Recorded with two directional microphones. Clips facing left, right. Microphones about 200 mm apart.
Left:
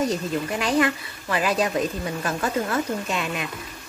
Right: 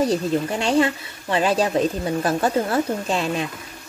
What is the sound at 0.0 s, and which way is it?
Speech, 30° right (ahead or behind).